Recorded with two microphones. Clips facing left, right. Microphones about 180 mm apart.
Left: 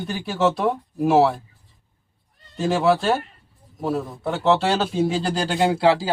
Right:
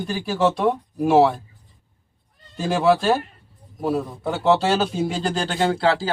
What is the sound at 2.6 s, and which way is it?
Speech, centre (ahead or behind).